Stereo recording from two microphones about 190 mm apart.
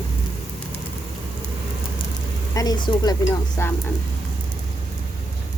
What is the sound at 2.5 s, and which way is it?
Speech, 20° left (ahead or behind).